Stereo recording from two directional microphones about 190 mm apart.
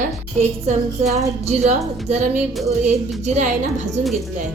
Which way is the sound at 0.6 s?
35° right (ahead or behind).